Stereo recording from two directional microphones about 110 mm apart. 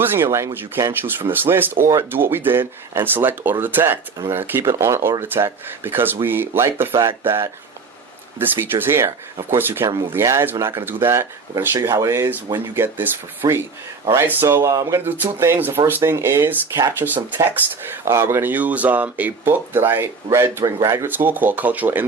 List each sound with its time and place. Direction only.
0.0 s speech: 20° right (ahead or behind)
9.8 s speech: 30° right (ahead or behind)